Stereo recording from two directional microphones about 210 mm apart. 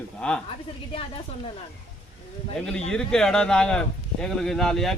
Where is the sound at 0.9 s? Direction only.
25° left (ahead or behind).